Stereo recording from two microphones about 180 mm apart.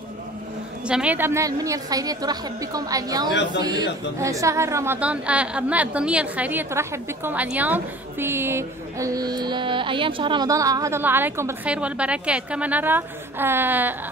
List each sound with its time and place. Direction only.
0.8 s a woman's voice: 5° right (ahead or behind)